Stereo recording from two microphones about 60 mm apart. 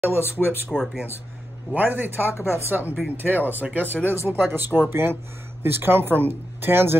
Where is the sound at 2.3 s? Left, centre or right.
Left.